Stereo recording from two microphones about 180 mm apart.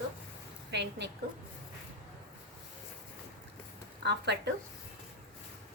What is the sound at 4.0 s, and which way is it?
Speech, 70° right (ahead or behind).